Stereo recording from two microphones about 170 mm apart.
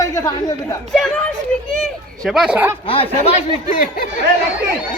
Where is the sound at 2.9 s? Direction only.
30° left (ahead or behind).